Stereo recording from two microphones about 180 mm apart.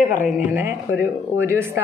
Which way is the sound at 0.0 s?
45° left (ahead or behind).